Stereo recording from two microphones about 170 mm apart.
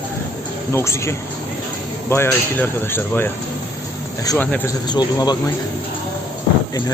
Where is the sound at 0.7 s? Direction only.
15° left (ahead or behind).